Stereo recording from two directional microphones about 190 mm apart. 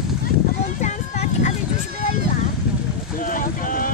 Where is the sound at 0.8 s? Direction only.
40° left (ahead or behind).